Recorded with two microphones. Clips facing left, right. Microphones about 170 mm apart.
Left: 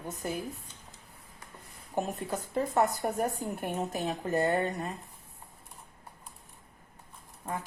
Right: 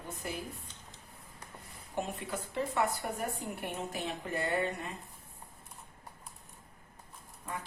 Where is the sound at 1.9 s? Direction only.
40° left (ahead or behind).